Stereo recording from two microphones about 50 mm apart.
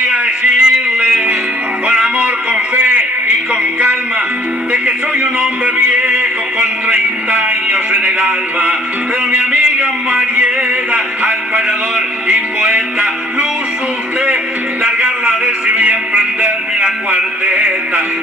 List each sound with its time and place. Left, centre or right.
0.1 s a sound: centre
2.7 s a sound: right
5.2 s music: centre
9.5 s speech: centre
12.3 s music: centre
14.8 s music: right